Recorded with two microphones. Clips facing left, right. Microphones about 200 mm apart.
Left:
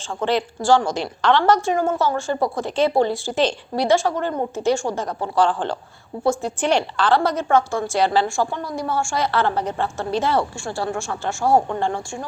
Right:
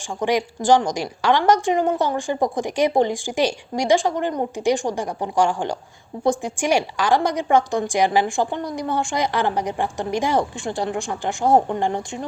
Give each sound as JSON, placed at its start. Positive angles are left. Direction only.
{"t": 0.2, "sound": "a woman's voice", "side_deg": -15}